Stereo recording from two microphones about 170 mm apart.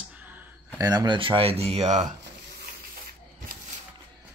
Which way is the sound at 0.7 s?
20° right (ahead or behind).